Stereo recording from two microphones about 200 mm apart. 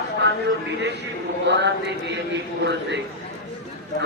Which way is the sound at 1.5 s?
60° right (ahead or behind).